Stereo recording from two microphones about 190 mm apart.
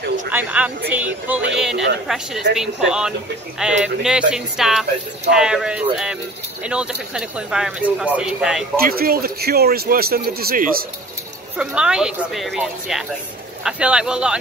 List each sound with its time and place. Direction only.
0.3 s speech: 10° right (ahead or behind)
8.7 s a man's voice: 50° right (ahead or behind)
11.5 s speech: 5° right (ahead or behind)